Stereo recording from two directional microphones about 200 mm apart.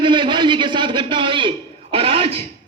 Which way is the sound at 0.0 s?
25° right (ahead or behind).